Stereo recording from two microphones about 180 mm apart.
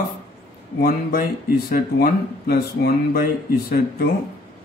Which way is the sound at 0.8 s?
60° left (ahead or behind).